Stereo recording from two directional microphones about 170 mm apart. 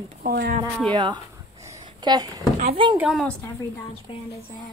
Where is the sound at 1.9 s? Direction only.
25° right (ahead or behind).